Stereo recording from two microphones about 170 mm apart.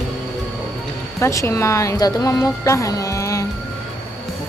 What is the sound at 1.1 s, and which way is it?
A woman's voice, 15° left (ahead or behind).